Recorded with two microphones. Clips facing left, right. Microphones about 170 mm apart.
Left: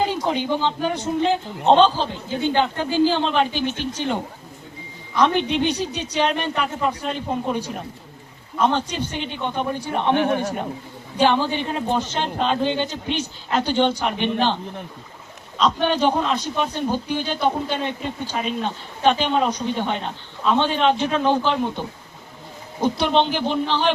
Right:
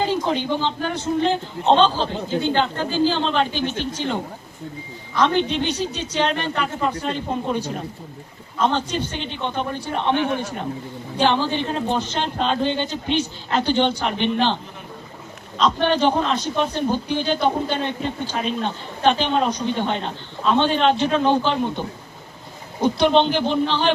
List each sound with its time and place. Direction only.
0.1 s a man's voice: 15° left (ahead or behind)
10.2 s speech: 50° left (ahead or behind)
11.2 s a man's voice: 10° left (ahead or behind)
15.5 s a man's voice: 5° left (ahead or behind)
22.8 s a man's voice: 5° left (ahead or behind)